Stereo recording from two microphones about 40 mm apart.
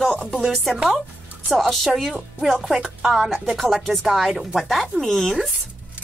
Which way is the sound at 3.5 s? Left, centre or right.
Centre.